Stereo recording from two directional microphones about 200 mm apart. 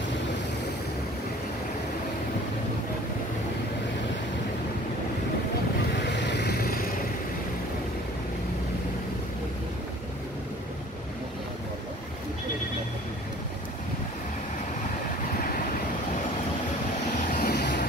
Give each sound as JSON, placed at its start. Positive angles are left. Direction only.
{"t": 6.1, "sound": "vehicle", "side_deg": 60}
{"t": 17.3, "sound": "vehicle", "side_deg": 50}